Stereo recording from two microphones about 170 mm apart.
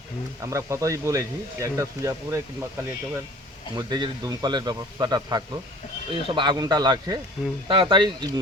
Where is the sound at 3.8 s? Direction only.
25° right (ahead or behind).